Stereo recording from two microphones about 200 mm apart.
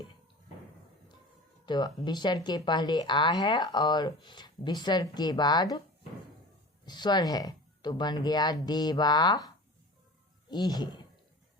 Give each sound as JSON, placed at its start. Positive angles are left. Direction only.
{"t": 1.6, "sound": "speech", "side_deg": 20}
{"t": 6.8, "sound": "speech", "side_deg": 20}
{"t": 10.5, "sound": "speech", "side_deg": 20}